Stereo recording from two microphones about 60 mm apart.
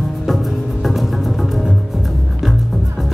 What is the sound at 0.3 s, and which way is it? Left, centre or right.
Music, centre.